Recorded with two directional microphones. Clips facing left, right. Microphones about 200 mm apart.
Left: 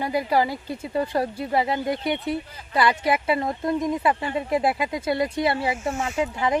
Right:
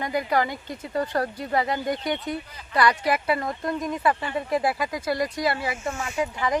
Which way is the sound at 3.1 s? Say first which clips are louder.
Left 2 dB; 25° left (ahead or behind).